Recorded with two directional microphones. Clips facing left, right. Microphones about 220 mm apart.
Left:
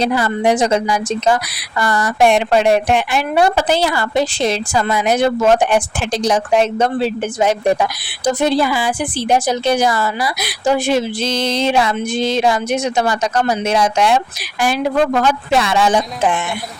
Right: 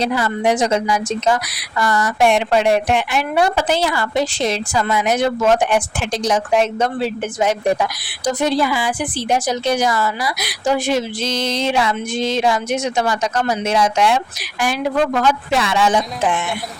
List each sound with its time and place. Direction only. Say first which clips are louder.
0.0 s a woman's voice: left 2 dB; 35° left (ahead or behind)